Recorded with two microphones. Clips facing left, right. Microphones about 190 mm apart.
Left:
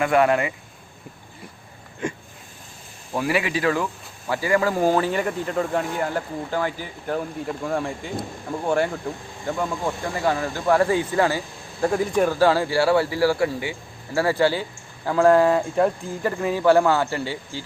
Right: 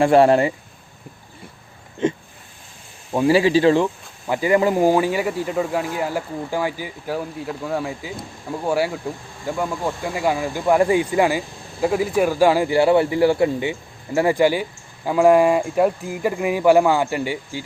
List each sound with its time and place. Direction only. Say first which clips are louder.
0.0 s speech: right 5 dB; 30° right (ahead or behind)
2.0 s a sound: right 8 dB; 25° right (ahead or behind)
3.1 s speech: right 8 dB; 30° right (ahead or behind)